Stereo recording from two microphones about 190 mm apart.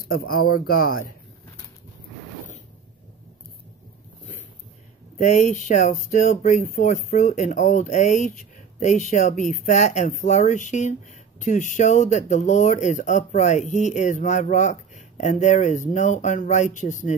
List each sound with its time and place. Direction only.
0.0 s speech: 50° left (ahead or behind)
5.2 s speech: 40° left (ahead or behind)